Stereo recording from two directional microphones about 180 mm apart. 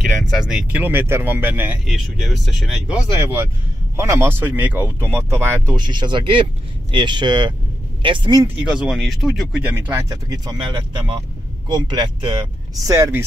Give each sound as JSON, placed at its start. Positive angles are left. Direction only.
{"t": 0.0, "sound": "speech", "side_deg": 0}
{"t": 3.9, "sound": "speech", "side_deg": -15}
{"t": 8.6, "sound": "speech", "side_deg": -5}